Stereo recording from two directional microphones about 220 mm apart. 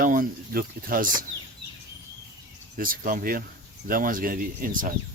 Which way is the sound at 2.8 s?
40° right (ahead or behind).